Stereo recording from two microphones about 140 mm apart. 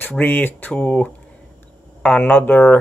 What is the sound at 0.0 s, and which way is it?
Speech, 15° left (ahead or behind).